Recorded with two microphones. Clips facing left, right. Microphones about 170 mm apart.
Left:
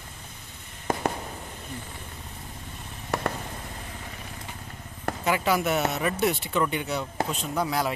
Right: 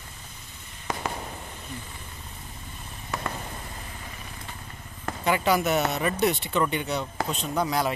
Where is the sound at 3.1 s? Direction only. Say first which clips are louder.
Left 4 dB; 65° left (ahead or behind).